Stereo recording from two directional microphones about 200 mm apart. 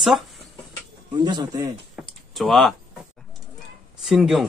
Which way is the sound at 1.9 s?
Centre (ahead or behind).